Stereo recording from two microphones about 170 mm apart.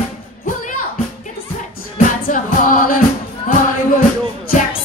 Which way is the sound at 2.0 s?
50° left (ahead or behind).